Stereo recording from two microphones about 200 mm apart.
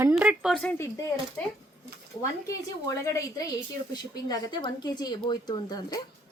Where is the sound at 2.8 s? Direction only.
15° left (ahead or behind).